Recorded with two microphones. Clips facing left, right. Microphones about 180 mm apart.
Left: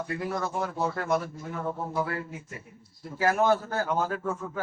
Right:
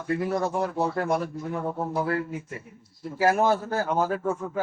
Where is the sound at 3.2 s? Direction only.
30° right (ahead or behind).